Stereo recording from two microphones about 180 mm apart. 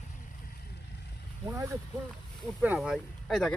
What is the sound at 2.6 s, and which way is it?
Speech, 5° right (ahead or behind).